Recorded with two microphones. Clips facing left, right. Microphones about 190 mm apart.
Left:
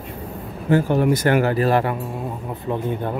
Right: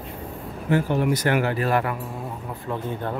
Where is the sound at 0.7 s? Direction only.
45° left (ahead or behind).